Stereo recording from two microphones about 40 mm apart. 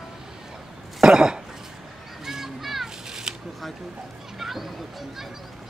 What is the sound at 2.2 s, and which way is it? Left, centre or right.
Children playing, centre.